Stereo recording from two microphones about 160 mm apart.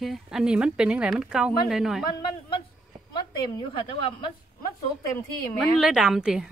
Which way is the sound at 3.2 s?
30° left (ahead or behind).